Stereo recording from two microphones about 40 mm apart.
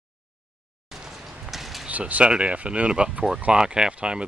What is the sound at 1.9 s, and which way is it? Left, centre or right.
Speech, right.